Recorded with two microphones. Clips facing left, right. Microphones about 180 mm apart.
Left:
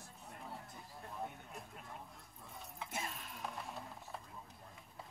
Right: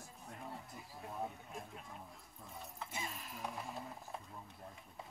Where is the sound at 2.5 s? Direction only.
Centre (ahead or behind).